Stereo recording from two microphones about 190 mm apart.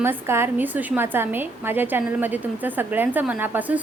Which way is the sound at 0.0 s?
10° right (ahead or behind).